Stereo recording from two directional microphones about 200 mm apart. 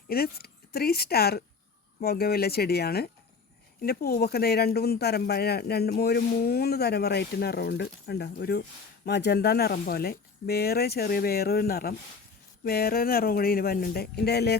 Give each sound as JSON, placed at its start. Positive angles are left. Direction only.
{"t": 0.1, "sound": "speech", "side_deg": 50}